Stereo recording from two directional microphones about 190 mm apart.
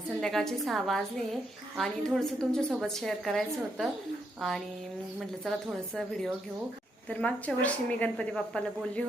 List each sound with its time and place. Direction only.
0.2 s a woman's voice: centre (ahead or behind)
6.0 s a woman's voice: centre (ahead or behind)